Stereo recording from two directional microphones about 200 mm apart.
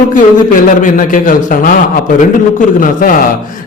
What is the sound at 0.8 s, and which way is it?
Speech, 40° left (ahead or behind).